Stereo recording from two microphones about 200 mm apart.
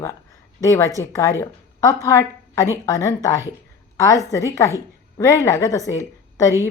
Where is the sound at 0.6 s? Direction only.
15° left (ahead or behind).